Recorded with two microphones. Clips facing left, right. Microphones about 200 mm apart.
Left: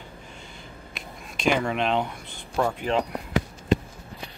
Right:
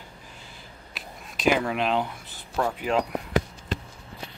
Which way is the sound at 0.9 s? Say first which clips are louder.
Even; 5° right (ahead or behind).